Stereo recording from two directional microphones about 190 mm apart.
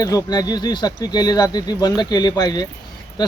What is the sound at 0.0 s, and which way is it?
A man's voice, 20° left (ahead or behind).